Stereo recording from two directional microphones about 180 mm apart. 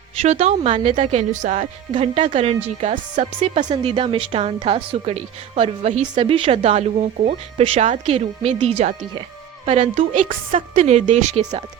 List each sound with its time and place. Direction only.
0.2 s speech: 40° right (ahead or behind)
1.9 s a woman's voice: 30° right (ahead or behind)